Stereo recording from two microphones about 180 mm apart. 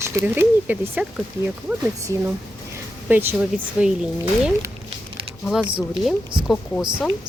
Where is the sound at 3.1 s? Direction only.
10° right (ahead or behind).